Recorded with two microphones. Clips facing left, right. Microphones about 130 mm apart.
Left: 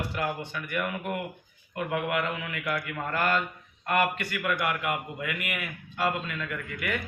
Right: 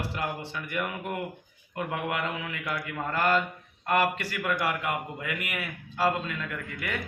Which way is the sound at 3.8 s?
30° right (ahead or behind).